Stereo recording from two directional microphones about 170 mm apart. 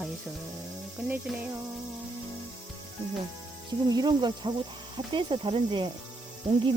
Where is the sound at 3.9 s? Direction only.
25° right (ahead or behind).